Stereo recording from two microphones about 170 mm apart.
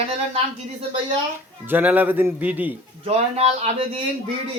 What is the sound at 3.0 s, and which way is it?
Speech, 40° right (ahead or behind).